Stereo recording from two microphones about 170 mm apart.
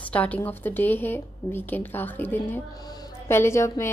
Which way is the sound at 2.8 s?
25° left (ahead or behind).